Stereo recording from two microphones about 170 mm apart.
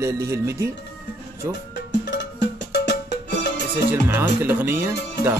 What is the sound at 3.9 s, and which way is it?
A man's voice, 15° right (ahead or behind).